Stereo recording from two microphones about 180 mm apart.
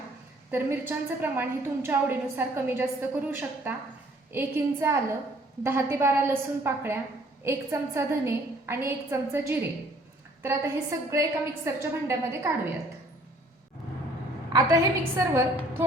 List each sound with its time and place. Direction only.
0.5 s a woman's voice: 10° right (ahead or behind)
14.5 s a woman's voice: 15° right (ahead or behind)